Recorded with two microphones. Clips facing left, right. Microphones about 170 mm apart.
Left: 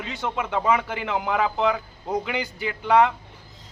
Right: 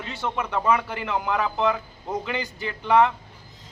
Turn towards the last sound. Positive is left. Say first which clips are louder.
# left 1 dB
turn(degrees=15)  # may be behind; listen again after turning